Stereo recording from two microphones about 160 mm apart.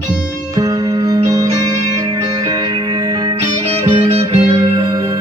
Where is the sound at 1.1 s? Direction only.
20° right (ahead or behind).